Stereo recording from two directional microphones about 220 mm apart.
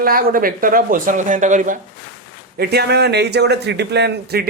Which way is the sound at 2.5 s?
45° right (ahead or behind).